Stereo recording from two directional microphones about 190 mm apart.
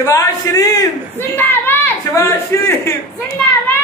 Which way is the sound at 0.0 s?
15° left (ahead or behind).